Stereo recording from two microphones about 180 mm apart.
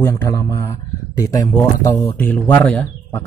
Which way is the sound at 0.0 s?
15° left (ahead or behind).